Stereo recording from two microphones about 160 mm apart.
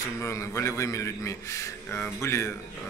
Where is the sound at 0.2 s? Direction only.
20° left (ahead or behind).